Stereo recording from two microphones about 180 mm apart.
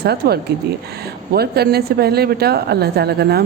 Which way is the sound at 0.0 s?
65° right (ahead or behind).